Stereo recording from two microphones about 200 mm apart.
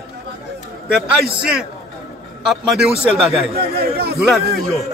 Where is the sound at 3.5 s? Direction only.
50° right (ahead or behind).